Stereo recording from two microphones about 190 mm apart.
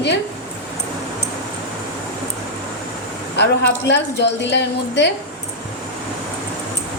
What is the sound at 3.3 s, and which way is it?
A woman's voice, 65° left (ahead or behind).